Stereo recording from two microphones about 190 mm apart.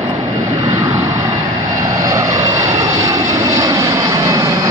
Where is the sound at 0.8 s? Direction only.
15° right (ahead or behind).